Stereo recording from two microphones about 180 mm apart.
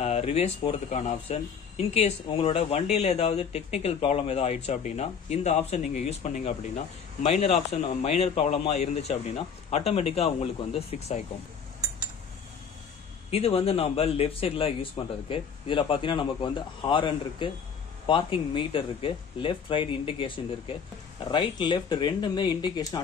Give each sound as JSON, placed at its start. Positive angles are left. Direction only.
{"t": 0.0, "sound": "speech", "side_deg": 35}
{"t": 13.3, "sound": "speech", "side_deg": 35}